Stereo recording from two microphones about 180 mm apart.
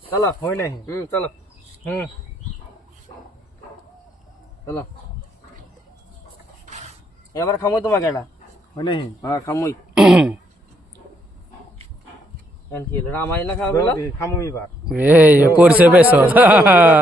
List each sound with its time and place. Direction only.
0.1 s speech: 15° left (ahead or behind)
4.6 s speech: 15° left (ahead or behind)
6.7 s a sound: 40° right (ahead or behind)
7.3 s speech: 20° left (ahead or behind)
8.7 s speech: 25° left (ahead or behind)
9.9 s throat clearing: 5° right (ahead or behind)
12.7 s speech: 10° left (ahead or behind)
14.8 s a man's voice: 10° right (ahead or behind)